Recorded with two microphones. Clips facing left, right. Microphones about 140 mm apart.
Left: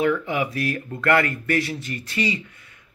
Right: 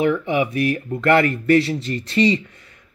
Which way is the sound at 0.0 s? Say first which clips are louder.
Right 3 dB; 20° right (ahead or behind).